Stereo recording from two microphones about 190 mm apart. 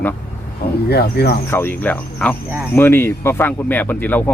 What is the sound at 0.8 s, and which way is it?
Speech, 55° left (ahead or behind).